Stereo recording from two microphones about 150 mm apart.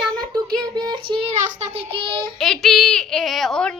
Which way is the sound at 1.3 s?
45° right (ahead or behind).